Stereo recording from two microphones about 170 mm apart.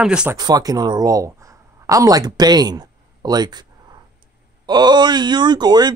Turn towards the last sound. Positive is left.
turn(degrees=-25)  # may be behind; listen again after turning